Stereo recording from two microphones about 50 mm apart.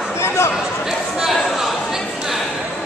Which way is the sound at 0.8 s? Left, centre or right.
Centre.